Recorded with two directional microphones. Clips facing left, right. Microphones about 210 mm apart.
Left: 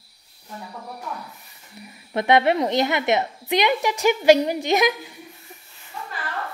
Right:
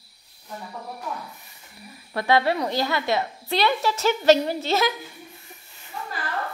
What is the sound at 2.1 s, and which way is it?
A woman's voice, 20° left (ahead or behind).